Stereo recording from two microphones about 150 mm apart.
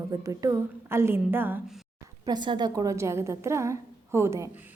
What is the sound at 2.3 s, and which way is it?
A woman's voice, 30° right (ahead or behind).